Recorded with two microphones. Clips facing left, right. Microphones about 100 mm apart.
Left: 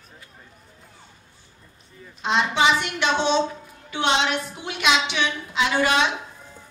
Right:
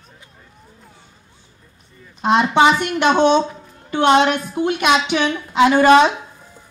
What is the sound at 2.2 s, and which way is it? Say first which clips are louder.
A woman's voice: right 7 dB; 50° right (ahead or behind).